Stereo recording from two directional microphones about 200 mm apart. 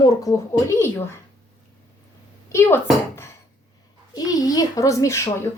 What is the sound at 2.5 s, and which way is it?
A child's voice, 15° left (ahead or behind).